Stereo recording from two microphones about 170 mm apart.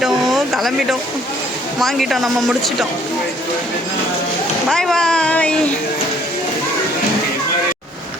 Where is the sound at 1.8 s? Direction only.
Centre (ahead or behind).